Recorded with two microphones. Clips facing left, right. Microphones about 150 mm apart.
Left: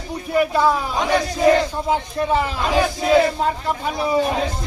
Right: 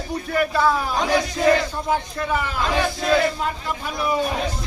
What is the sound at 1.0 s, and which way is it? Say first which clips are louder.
Speech: left 2 dB; centre (ahead or behind).